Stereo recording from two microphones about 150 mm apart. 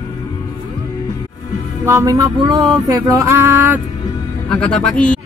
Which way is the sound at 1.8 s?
20° right (ahead or behind).